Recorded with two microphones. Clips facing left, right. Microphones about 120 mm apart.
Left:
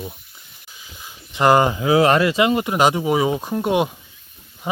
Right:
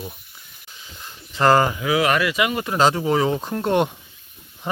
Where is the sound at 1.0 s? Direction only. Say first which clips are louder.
Left 1 dB; 15° left (ahead or behind).